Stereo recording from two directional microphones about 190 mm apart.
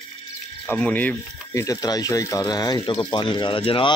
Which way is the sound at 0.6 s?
10° left (ahead or behind).